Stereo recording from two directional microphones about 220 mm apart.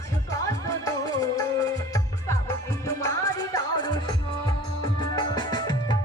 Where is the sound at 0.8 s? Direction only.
15° left (ahead or behind).